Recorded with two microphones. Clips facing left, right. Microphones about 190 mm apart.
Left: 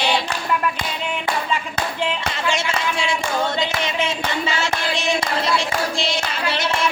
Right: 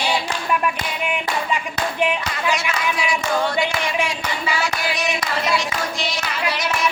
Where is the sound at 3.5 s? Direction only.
20° left (ahead or behind).